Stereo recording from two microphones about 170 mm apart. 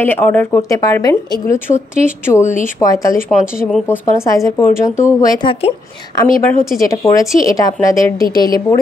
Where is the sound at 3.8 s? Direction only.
15° left (ahead or behind).